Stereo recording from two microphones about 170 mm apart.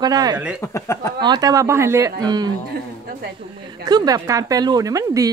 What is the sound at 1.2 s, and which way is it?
A woman's voice, 25° right (ahead or behind).